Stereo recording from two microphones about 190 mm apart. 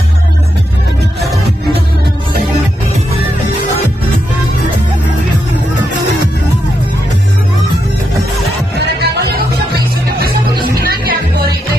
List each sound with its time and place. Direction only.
8.7 s music: 60° right (ahead or behind)
10.8 s music: 50° right (ahead or behind)